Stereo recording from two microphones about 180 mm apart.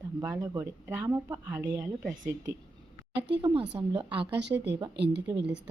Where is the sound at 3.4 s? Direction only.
25° right (ahead or behind).